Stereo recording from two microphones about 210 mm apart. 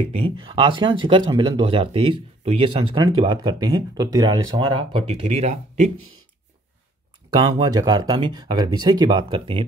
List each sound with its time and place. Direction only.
0.0 s speech: 25° right (ahead or behind)
7.3 s speech: 20° right (ahead or behind)